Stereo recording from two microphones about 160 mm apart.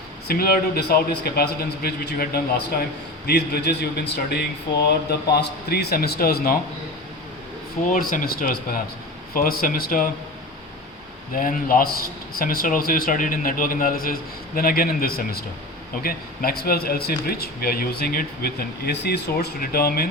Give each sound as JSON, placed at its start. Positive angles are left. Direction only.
{"t": 0.3, "sound": "speech", "side_deg": 70}
{"t": 3.2, "sound": "a man's voice", "side_deg": 90}
{"t": 7.8, "sound": "a man's voice", "side_deg": 55}
{"t": 11.3, "sound": "a man's voice", "side_deg": 60}